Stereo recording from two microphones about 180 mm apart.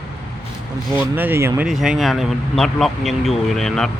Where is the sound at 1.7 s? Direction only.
Centre (ahead or behind).